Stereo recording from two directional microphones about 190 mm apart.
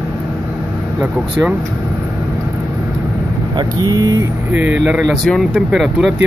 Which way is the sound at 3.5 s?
20° right (ahead or behind).